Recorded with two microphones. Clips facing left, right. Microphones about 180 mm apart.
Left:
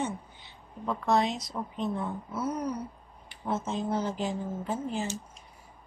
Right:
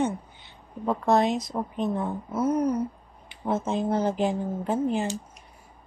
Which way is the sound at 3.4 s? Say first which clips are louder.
Right 5 dB; 60° right (ahead or behind).